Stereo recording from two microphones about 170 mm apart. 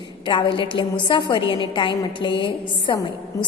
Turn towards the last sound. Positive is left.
turn(degrees=30)  # may be behind; listen again after turning